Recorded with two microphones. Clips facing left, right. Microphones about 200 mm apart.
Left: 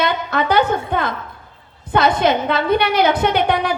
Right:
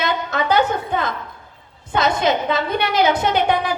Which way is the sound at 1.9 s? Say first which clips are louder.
Left 3 dB; 55° left (ahead or behind).